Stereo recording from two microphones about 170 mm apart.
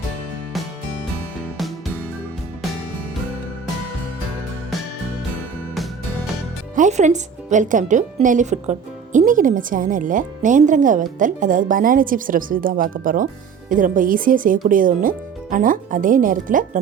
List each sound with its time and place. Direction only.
6.7 s speech: 45° right (ahead or behind)